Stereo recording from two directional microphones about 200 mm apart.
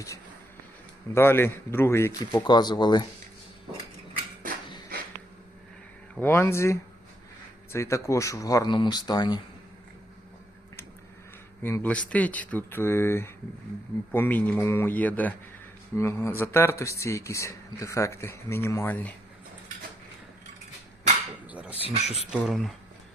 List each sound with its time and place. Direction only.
1.1 s speech: 10° left (ahead or behind)
6.1 s speech: 10° left (ahead or behind)
11.6 s speech: 10° left (ahead or behind)
21.5 s a sound: 5° right (ahead or behind)
21.8 s speech: 30° left (ahead or behind)
22.3 s speech: centre (ahead or behind)